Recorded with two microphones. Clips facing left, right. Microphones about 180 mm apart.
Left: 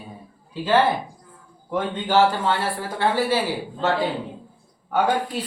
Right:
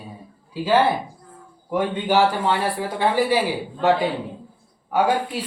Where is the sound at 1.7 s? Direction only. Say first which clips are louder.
Right 1 dB; 10° right (ahead or behind).